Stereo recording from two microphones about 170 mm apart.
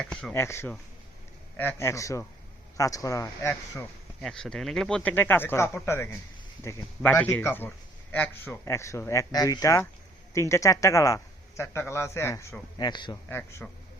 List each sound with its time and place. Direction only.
0.0 s speech: 5° left (ahead or behind)
0.3 s a man's voice: 15° left (ahead or behind)
4.2 s a man's voice: 5° left (ahead or behind); by 13.1 s 25° left (ahead or behind)
13.2 s a man's voice: 15° left (ahead or behind)